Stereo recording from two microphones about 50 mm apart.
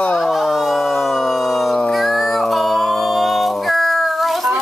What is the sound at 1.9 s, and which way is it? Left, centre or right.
Music, centre.